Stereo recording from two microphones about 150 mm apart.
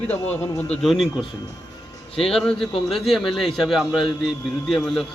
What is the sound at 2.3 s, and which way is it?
A man's voice, centre (ahead or behind).